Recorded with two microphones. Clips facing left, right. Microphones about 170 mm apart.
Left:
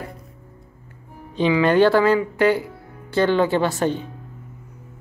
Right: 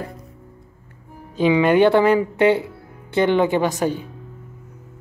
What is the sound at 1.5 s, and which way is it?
Speech, 15° right (ahead or behind).